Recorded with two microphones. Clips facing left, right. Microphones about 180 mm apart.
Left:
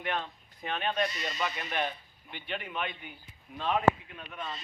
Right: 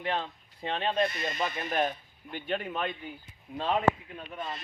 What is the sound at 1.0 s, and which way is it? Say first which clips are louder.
Speech: right 2 dB; 55° right (ahead or behind).